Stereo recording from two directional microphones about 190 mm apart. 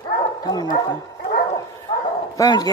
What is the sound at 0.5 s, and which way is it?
Speech, 20° left (ahead or behind).